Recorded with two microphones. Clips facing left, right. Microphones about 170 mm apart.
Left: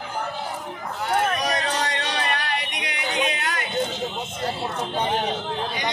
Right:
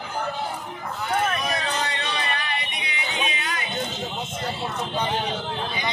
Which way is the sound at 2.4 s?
80° left.